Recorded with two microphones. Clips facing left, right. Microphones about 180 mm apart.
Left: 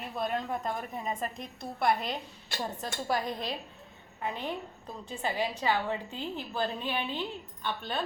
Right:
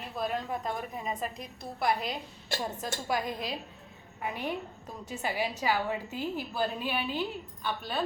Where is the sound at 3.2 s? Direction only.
5° right (ahead or behind).